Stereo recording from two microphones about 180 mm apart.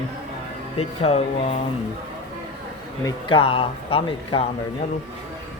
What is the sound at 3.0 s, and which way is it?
Speech, 30° left (ahead or behind).